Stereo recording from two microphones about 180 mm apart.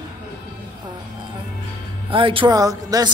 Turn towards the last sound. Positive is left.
turn(degrees=-20)  # may be behind; listen again after turning